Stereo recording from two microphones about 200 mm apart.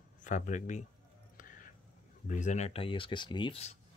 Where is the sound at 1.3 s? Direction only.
40° left (ahead or behind).